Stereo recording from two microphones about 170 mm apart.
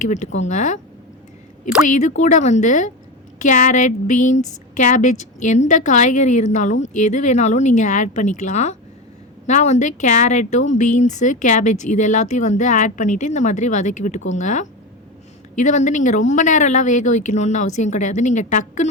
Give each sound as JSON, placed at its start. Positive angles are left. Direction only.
{"t": 0.0, "sound": "speech", "side_deg": 45}
{"t": 1.9, "sound": "speech", "side_deg": 45}